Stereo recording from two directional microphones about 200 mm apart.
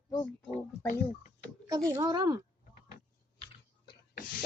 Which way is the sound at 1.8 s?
15° right (ahead or behind).